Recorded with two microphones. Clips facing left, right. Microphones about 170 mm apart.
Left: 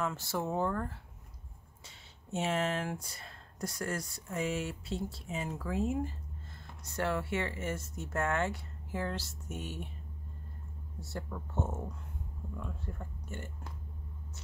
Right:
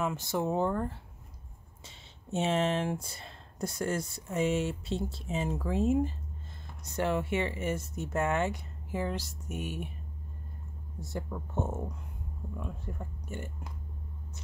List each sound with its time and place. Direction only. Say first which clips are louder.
0.0 s speech: right 4 dB; 20° right (ahead or behind)
11.0 s speech: right 3 dB; 15° right (ahead or behind)